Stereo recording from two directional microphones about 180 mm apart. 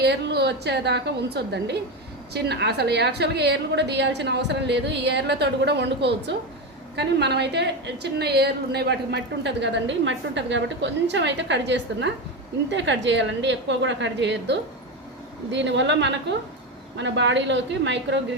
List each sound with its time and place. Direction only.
0.0 s a woman's voice: 65° right (ahead or behind)